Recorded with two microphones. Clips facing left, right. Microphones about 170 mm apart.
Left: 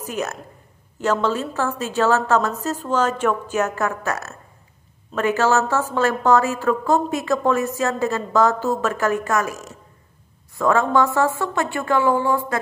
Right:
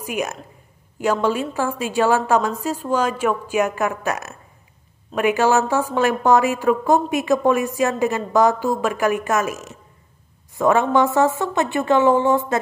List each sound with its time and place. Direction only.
0.0 s a woman's voice: 15° right (ahead or behind)